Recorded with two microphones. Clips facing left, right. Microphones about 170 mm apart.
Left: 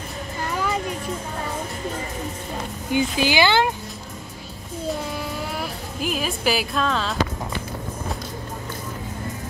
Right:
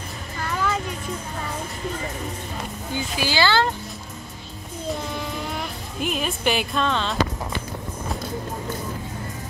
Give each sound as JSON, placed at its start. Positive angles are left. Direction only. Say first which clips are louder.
{"t": 2.9, "sound": "speech", "louder": "left 6 dB", "side_deg": 15}
{"t": 5.1, "sound": "music", "louder": "left 1 dB", "side_deg": 5}